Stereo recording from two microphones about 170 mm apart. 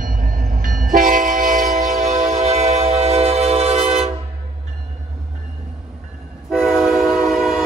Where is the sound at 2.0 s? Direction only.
40° right (ahead or behind).